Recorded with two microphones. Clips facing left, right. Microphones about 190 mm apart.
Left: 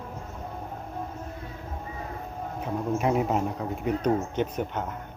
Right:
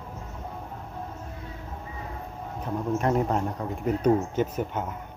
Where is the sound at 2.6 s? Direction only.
5° left (ahead or behind).